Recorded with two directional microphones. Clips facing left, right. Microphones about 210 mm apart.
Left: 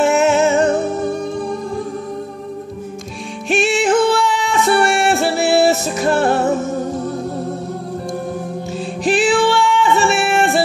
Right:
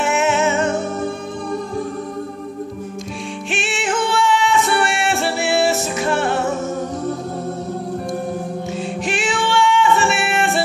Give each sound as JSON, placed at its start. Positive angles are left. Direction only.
{"t": 0.0, "sound": "music", "side_deg": 35}
{"t": 3.4, "sound": "music", "side_deg": 40}
{"t": 8.7, "sound": "music", "side_deg": 35}